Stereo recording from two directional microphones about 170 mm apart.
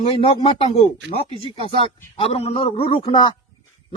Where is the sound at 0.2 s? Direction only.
30° left (ahead or behind).